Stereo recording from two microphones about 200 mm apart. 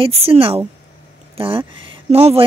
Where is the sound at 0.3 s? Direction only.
25° right (ahead or behind).